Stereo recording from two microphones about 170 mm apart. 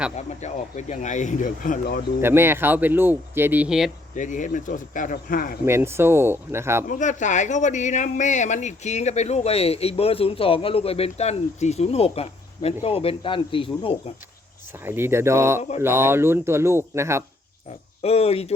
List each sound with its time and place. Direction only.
0.2 s speech: 40° left (ahead or behind); by 2.0 s 55° left (ahead or behind)
2.2 s speech: 15° right (ahead or behind)
4.1 s speech: 50° left (ahead or behind)
5.6 s speech: 15° right (ahead or behind)
6.8 s speech: 45° left (ahead or behind); by 13.9 s 30° left (ahead or behind)
14.8 s speech: 15° right (ahead or behind)
18.0 s speech: 35° left (ahead or behind)